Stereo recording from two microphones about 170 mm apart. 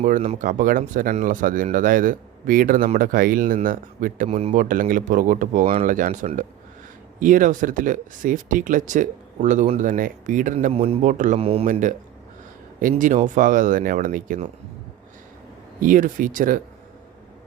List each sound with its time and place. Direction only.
0.0 s speech: 45° right (ahead or behind)
4.3 s speech: 35° right (ahead or behind)
4.5 s speech: 50° right (ahead or behind)
15.8 s speech: 50° right (ahead or behind)